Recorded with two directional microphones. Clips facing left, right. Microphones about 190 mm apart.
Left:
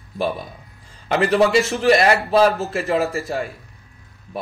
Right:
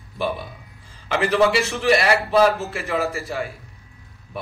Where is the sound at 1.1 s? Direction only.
35° left (ahead or behind).